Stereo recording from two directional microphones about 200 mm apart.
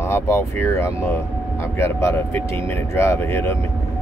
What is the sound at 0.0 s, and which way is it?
Speech, 15° left (ahead or behind).